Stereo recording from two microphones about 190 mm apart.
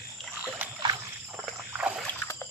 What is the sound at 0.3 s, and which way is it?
Rowboat, centre (ahead or behind).